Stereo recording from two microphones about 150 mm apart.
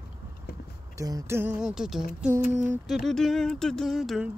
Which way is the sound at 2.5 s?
5° right (ahead or behind).